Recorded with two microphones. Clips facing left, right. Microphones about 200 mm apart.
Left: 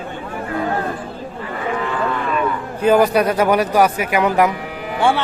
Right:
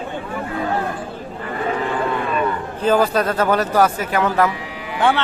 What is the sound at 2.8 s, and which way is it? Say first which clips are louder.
A man's voice: left 3 dB; 15° left (ahead or behind).